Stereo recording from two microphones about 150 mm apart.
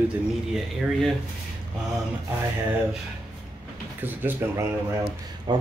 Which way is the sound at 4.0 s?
15° right (ahead or behind).